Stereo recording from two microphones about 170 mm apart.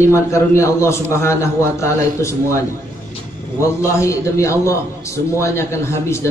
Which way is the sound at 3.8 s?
15° left (ahead or behind).